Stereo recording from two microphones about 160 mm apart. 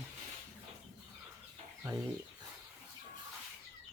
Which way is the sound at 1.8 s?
20° right (ahead or behind).